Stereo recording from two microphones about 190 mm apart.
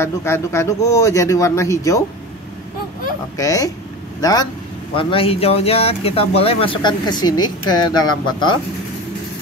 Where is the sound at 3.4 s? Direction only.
20° left (ahead or behind).